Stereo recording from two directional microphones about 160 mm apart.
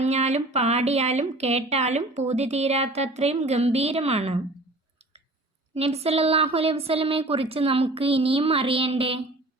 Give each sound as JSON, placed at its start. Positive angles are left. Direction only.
{"t": 0.0, "sound": "speech", "side_deg": -45}
{"t": 5.7, "sound": "a woman's voice", "side_deg": -40}